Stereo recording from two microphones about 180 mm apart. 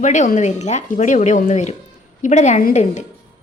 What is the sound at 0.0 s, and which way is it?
A woman's voice, 45° left (ahead or behind).